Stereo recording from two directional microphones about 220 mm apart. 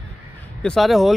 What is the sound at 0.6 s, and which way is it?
Speech, centre (ahead or behind).